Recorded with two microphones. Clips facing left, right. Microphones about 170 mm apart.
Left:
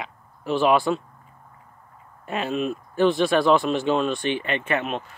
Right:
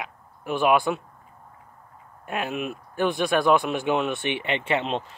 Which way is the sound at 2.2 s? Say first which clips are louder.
Left 3 dB; 10° right (ahead or behind).